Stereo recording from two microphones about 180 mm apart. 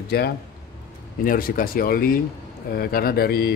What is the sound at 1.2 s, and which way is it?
A man's voice, 50° left (ahead or behind).